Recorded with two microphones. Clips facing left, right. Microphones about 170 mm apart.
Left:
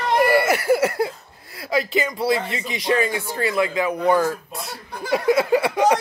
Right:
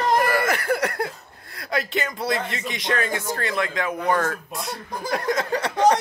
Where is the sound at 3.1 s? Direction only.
45° right (ahead or behind).